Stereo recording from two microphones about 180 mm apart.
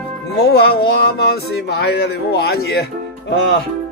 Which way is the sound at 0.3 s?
65° left (ahead or behind).